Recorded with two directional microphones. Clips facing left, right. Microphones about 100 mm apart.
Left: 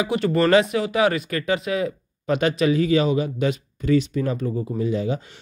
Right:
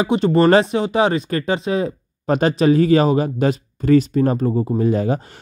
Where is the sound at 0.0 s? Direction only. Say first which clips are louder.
Right 5 dB; 25° right (ahead or behind); by 5.2 s 50° right (ahead or behind).